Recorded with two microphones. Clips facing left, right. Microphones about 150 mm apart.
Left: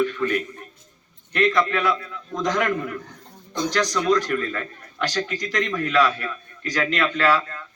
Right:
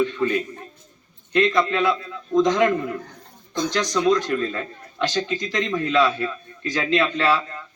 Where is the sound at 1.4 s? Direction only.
25° right (ahead or behind).